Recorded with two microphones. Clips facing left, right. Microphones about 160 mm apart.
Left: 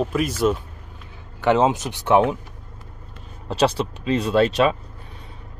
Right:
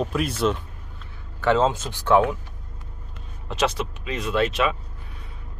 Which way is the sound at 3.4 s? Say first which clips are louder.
Left 4 dB; 35° left (ahead or behind).